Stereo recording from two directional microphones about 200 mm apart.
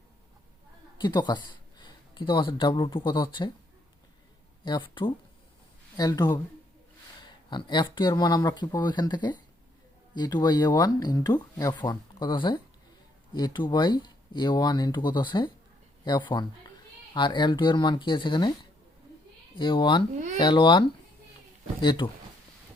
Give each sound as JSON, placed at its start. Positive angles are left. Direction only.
{"t": 0.9, "sound": "speech", "side_deg": 20}
{"t": 4.6, "sound": "speech", "side_deg": 25}
{"t": 19.5, "sound": "speech", "side_deg": 25}